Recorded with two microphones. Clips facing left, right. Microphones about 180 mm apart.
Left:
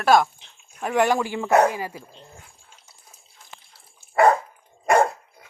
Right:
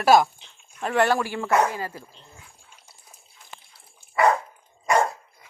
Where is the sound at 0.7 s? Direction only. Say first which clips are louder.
Left 1 dB; 10° left (ahead or behind).